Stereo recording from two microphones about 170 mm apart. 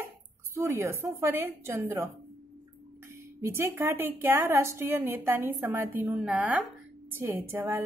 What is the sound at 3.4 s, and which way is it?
A woman's voice, 15° right (ahead or behind).